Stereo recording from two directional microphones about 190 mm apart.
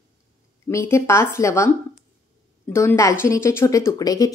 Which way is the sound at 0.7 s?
15° left (ahead or behind).